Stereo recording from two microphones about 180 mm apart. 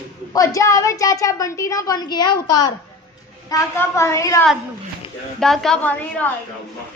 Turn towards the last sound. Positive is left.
turn(degrees=10)  # may be behind; listen again after turning